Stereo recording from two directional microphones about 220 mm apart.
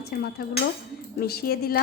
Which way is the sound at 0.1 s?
40° left (ahead or behind).